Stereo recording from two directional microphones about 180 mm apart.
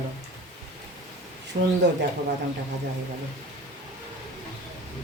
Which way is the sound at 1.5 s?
45° right (ahead or behind).